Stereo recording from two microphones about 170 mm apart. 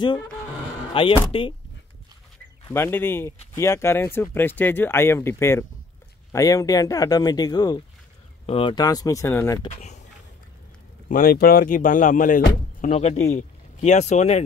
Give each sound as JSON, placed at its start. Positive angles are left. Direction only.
{"t": 0.9, "sound": "speech", "side_deg": 30}
{"t": 2.7, "sound": "speech", "side_deg": 15}
{"t": 9.7, "sound": "speech", "side_deg": 45}
{"t": 11.1, "sound": "speech", "side_deg": 55}
{"t": 12.8, "sound": "speech", "side_deg": 40}